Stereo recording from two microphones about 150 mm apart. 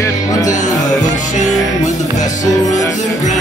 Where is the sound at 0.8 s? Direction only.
55° left (ahead or behind).